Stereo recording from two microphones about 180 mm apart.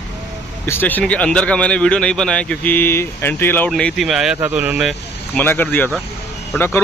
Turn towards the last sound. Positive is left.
turn(degrees=10)  # may be behind; listen again after turning